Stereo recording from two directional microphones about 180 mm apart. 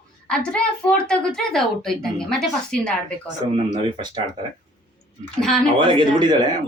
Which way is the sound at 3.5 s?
25° right (ahead or behind).